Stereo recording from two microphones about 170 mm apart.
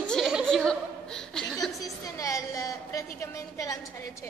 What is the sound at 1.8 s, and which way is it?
A woman's voice, 20° left (ahead or behind).